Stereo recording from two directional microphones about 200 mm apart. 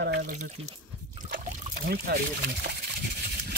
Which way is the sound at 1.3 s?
50° right (ahead or behind).